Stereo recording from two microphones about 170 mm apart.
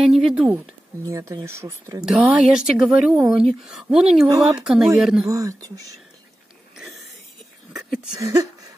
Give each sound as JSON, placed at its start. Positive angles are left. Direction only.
{"t": 0.0, "sound": "a sound", "side_deg": -5}
{"t": 1.0, "sound": "speech", "side_deg": -20}
{"t": 2.0, "sound": "speech", "side_deg": -5}
{"t": 5.2, "sound": "speech", "side_deg": -20}
{"t": 8.2, "sound": "speech", "side_deg": -20}